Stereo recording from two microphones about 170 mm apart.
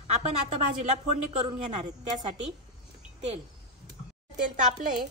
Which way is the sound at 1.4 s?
35° right (ahead or behind).